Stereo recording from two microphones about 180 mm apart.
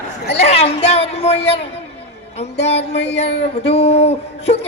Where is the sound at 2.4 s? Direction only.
35° left (ahead or behind).